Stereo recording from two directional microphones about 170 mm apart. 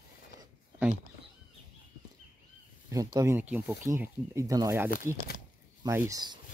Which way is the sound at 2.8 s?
20° right (ahead or behind).